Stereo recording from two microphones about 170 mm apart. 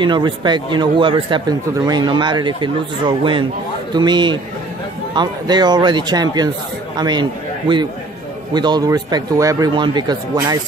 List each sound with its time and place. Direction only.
0.0 s speech: 25° right (ahead or behind)